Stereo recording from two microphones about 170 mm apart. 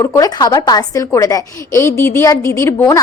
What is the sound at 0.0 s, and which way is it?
A woman's voice, 20° left (ahead or behind).